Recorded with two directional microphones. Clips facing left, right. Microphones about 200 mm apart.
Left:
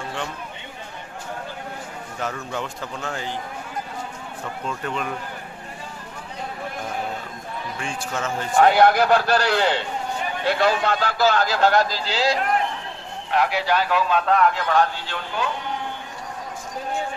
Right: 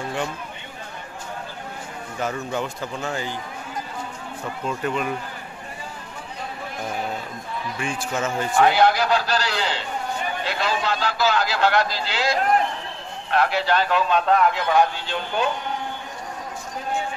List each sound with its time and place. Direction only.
2.5 s a man's voice: 5° right (ahead or behind)
4.6 s speech: 5° right (ahead or behind)
7.8 s speech: 10° right (ahead or behind)
8.5 s a man's voice: 50° left (ahead or behind); by 12.4 s 35° left (ahead or behind)
13.3 s a man's voice: 15° left (ahead or behind); by 15.5 s 20° right (ahead or behind)